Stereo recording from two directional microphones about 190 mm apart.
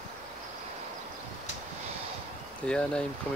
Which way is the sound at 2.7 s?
5° left (ahead or behind).